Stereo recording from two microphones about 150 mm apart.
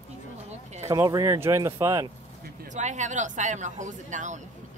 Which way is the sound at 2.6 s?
55° right (ahead or behind).